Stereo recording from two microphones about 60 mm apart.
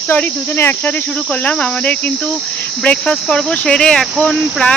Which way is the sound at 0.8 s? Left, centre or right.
Left.